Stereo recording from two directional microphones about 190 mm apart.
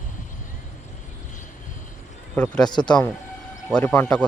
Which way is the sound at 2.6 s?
25° left (ahead or behind).